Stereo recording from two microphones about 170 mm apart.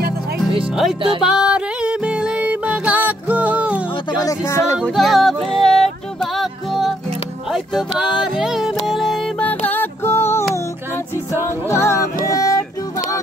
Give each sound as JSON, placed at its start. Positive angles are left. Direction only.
{"t": 1.2, "sound": "music", "side_deg": -5}
{"t": 4.2, "sound": "music", "side_deg": 20}
{"t": 4.8, "sound": "music", "side_deg": 0}
{"t": 11.7, "sound": "music", "side_deg": 15}